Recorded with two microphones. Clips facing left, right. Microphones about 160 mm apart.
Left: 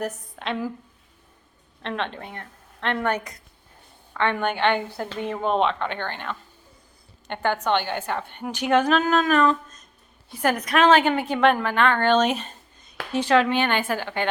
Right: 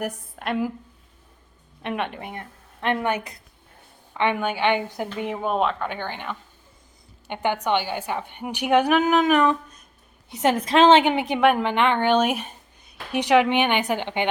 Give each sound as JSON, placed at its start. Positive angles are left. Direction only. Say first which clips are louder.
{"t": 0.0, "sound": "a woman's voice", "louder": "even", "side_deg": -10}
{"t": 1.8, "sound": "a woman's voice", "louder": "right 1 dB", "side_deg": -10}